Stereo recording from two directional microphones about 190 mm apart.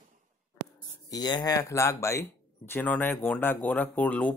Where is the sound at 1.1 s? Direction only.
20° left (ahead or behind).